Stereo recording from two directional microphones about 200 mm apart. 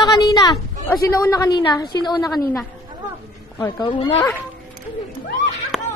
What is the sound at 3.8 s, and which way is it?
Speech, 25° left (ahead or behind).